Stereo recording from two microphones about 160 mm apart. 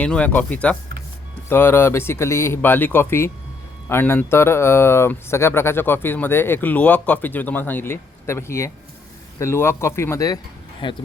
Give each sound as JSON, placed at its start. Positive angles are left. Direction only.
{"t": 0.0, "sound": "speech", "side_deg": 10}